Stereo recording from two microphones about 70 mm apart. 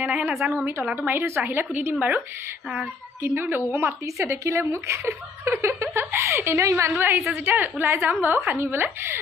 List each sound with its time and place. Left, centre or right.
0.4 s a woman's voice: centre
1.0 s a woman's voice: right
4.2 s a woman's voice: right
6.9 s a woman's voice: right